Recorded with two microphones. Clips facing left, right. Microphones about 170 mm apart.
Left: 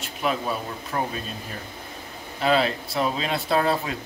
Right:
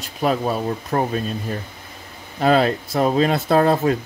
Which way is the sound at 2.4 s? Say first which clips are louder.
Right 5 dB; 45° right (ahead or behind).